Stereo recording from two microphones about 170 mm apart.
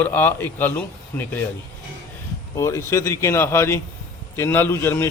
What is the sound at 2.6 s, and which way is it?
A man's voice, 15° left (ahead or behind).